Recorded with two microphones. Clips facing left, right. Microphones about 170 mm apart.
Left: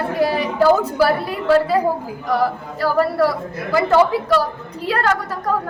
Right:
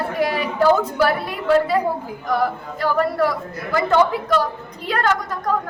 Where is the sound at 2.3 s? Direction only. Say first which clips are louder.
Left 2 dB; 10° left (ahead or behind).